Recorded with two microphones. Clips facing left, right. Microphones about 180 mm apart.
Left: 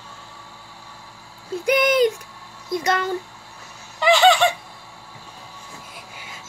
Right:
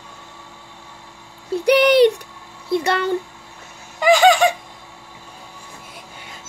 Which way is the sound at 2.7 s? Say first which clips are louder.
Right 3 dB; 65° right (ahead or behind).